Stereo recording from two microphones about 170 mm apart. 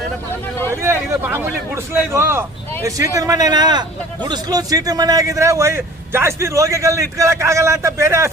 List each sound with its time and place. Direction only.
0.7 s a man's voice: 15° right (ahead or behind)